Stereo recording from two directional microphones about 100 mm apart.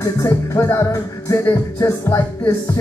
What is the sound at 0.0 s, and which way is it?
Music, 35° left (ahead or behind).